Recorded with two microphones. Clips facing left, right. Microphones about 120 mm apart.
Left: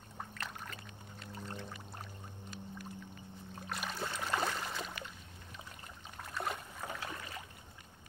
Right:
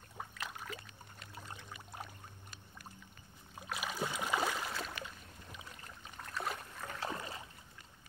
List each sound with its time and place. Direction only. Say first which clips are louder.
0.2 s boat: even; 5° right (ahead or behind)
1.3 s pour: left 5 dB; 10° right (ahead or behind)
3.5 s boat: right 1 dB; 5° right (ahead or behind)
6.2 s boat: left 1 dB; centre (ahead or behind)
7.0 s rowboat: right 4 dB; 30° right (ahead or behind)